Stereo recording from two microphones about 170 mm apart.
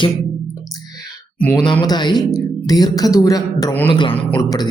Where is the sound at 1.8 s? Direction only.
25° left (ahead or behind).